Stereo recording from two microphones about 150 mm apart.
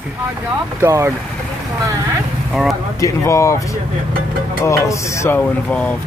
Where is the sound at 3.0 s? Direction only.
20° left (ahead or behind).